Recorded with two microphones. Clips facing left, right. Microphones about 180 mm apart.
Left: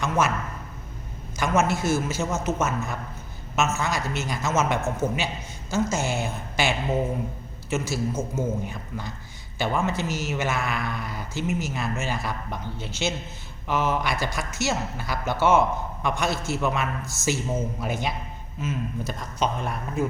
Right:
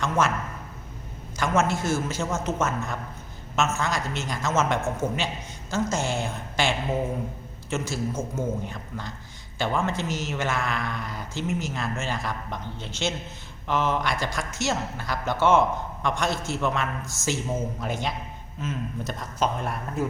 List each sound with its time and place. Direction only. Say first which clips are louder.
1.4 s speech: left 1 dB; 10° left (ahead or behind)